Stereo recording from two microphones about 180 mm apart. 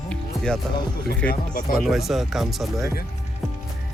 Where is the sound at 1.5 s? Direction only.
55° left (ahead or behind).